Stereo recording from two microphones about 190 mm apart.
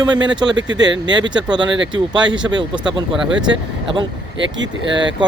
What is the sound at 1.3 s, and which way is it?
Speech, 25° right (ahead or behind).